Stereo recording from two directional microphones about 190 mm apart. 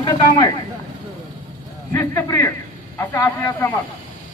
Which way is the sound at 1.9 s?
10° left (ahead or behind).